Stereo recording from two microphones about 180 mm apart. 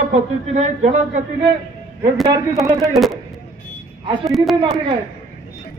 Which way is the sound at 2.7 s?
Centre (ahead or behind).